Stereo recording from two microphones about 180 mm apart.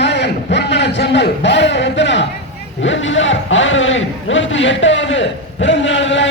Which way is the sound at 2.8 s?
90° left.